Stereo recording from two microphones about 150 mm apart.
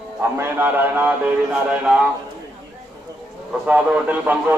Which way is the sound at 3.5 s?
10° right (ahead or behind).